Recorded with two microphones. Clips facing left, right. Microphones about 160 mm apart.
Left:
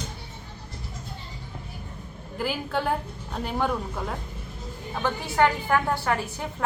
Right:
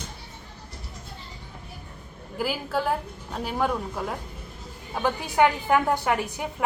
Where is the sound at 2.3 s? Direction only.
5° right (ahead or behind).